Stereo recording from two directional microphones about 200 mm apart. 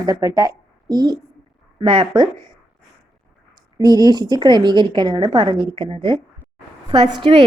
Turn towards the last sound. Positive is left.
turn(degrees=-30)  # may be behind; listen again after turning